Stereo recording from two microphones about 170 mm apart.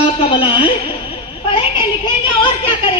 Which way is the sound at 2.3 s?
30° left (ahead or behind).